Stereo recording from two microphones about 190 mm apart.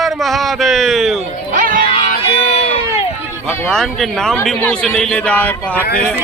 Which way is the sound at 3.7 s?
Centre (ahead or behind).